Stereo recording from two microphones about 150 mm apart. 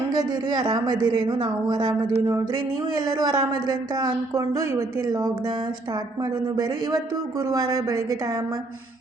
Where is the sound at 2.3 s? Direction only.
25° right (ahead or behind).